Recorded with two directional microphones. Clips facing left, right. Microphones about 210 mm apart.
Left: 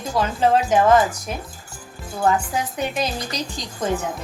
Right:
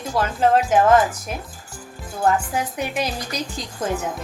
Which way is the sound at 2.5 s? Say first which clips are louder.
Even; 10° right (ahead or behind).